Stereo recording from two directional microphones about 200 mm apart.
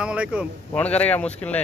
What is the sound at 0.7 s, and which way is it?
Speech, 5° left (ahead or behind).